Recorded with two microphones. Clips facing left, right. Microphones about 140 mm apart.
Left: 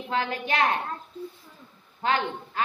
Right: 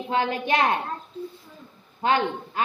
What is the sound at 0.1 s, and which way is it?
Speech, 25° right (ahead or behind).